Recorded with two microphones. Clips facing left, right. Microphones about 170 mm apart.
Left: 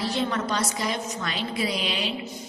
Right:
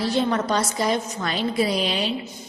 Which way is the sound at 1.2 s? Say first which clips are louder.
Right 6 dB; 40° right (ahead or behind).